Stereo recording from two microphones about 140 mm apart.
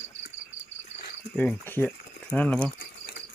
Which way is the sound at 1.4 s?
15° left (ahead or behind).